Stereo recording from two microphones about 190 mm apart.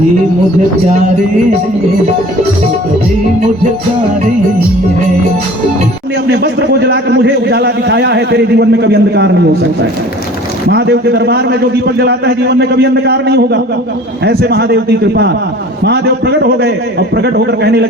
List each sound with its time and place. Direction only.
6.2 s a man's voice: 60° right (ahead or behind)
10.7 s a man's voice: 60° right (ahead or behind)